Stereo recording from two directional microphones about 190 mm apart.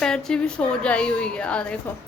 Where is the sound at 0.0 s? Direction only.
5° left (ahead or behind).